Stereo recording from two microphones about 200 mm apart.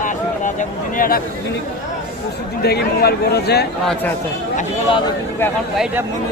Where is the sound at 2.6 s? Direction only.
55° left (ahead or behind).